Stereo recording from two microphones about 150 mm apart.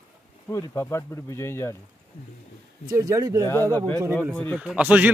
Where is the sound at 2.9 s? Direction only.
20° right (ahead or behind).